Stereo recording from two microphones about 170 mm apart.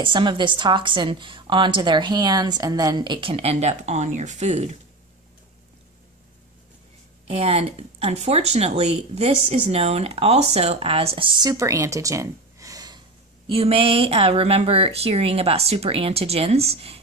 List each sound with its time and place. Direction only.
0.0 s a woman's voice: 30° right (ahead or behind)
7.2 s speech: 35° right (ahead or behind)
13.5 s speech: 35° right (ahead or behind)